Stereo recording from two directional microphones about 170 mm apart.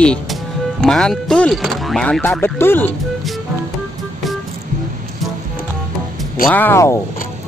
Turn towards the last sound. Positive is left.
turn(degrees=15)  # may be behind; listen again after turning